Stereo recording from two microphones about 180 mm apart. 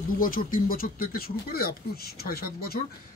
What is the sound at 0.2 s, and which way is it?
Speech, 50° left (ahead or behind).